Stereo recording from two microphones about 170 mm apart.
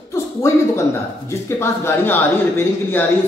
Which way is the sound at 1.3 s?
15° left (ahead or behind).